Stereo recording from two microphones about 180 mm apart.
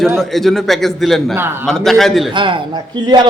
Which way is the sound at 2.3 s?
25° right (ahead or behind).